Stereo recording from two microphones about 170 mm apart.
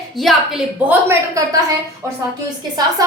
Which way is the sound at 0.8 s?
15° right (ahead or behind).